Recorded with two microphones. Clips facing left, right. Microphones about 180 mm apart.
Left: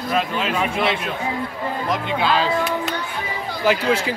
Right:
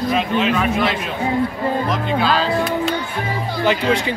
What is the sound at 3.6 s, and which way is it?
Speech, 5° left (ahead or behind).